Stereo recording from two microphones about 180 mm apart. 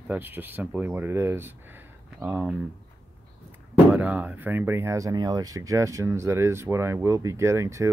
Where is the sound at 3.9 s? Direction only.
10° right (ahead or behind).